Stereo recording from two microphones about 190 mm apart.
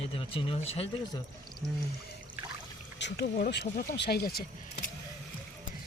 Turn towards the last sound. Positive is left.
turn(degrees=50)  # may be behind; listen again after turning